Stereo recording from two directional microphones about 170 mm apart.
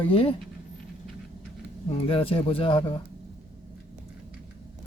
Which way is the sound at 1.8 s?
35° left (ahead or behind).